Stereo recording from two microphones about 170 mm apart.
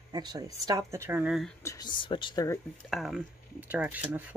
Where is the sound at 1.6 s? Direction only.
20° left (ahead or behind).